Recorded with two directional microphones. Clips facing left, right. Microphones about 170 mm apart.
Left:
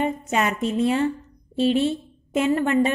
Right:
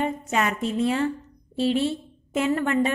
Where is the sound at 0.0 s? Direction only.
20° left (ahead or behind).